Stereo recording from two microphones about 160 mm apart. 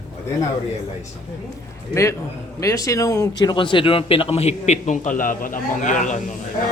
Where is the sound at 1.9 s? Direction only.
20° left (ahead or behind).